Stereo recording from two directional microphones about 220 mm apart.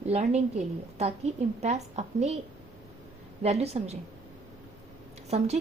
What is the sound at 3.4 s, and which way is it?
Speech, 30° right (ahead or behind).